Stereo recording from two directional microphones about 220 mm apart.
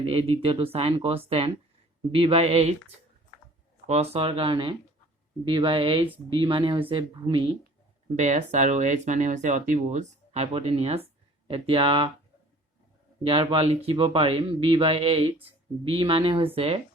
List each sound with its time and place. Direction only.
0.0 s speech: 25° right (ahead or behind)
3.8 s speech: 30° right (ahead or behind)
13.2 s speech: 25° right (ahead or behind)